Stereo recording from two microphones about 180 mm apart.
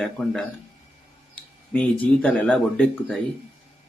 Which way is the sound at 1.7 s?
10° left (ahead or behind).